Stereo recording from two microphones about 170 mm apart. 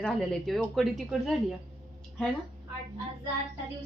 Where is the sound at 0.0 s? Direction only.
5° left (ahead or behind).